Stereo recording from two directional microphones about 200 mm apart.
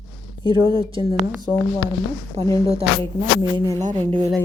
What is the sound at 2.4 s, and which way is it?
Speech, 35° right (ahead or behind).